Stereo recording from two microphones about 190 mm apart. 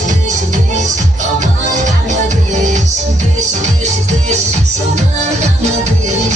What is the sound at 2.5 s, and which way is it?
Music, 40° right (ahead or behind).